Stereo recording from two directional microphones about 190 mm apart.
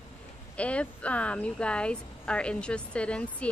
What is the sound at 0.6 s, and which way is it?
Speech, 5° left (ahead or behind).